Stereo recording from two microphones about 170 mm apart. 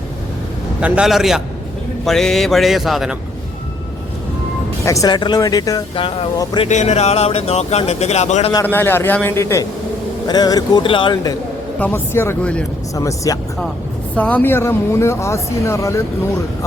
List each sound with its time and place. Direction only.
0.8 s speech: 5° right (ahead or behind)
4.9 s speech: 20° left (ahead or behind)
6.7 s speech: 40° left (ahead or behind)
8.6 s speech: 10° left (ahead or behind)
13.0 s speech: 20° left (ahead or behind)
14.2 s speech: 10° left (ahead or behind)